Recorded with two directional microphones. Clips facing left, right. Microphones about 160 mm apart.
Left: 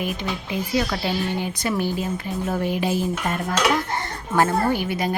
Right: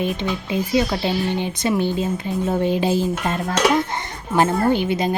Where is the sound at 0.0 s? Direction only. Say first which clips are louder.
Right 4 dB; 25° right (ahead or behind).